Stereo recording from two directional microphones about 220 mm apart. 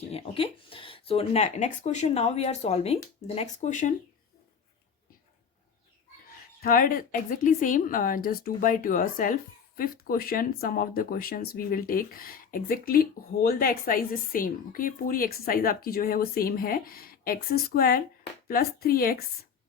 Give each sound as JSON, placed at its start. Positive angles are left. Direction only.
{"t": 0.1, "sound": "a woman's voice", "side_deg": 25}
{"t": 6.6, "sound": "a woman's voice", "side_deg": 40}